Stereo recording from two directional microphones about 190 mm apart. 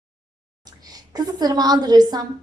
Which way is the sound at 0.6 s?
20° right (ahead or behind).